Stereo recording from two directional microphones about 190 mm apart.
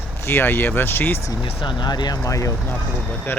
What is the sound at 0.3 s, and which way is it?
Speech, 10° left (ahead or behind).